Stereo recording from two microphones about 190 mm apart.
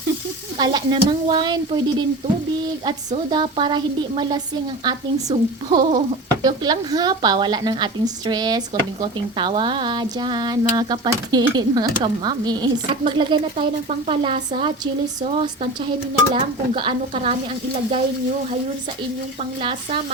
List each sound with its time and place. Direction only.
0.6 s speech: 25° right (ahead or behind)
3.2 s speech: 25° right (ahead or behind)
16.3 s speech: 25° right (ahead or behind)